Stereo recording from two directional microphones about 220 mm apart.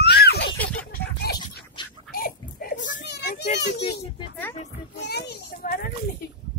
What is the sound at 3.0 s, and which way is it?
Children playing, 50° left (ahead or behind).